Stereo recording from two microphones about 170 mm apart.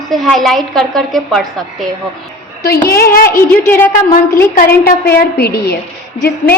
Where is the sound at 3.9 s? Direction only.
55° left (ahead or behind).